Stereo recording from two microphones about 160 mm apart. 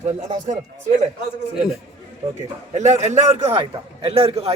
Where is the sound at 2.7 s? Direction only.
45° right (ahead or behind).